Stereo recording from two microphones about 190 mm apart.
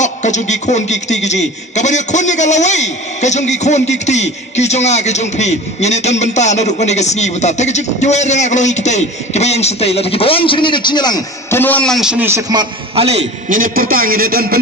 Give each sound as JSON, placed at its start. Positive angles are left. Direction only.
{"t": 0.0, "sound": "a man's voice", "side_deg": 40}
{"t": 13.6, "sound": "a man's voice", "side_deg": -50}